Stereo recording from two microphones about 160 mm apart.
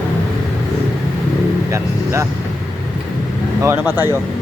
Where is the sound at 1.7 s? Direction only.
20° right (ahead or behind).